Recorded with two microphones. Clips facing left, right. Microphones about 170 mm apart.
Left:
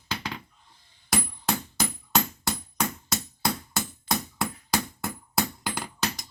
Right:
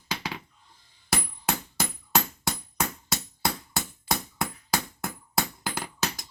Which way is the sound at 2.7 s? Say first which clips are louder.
Left 2 dB; centre (ahead or behind).